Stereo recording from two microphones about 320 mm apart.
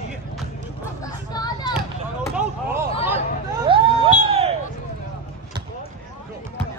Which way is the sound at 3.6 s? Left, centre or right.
Centre.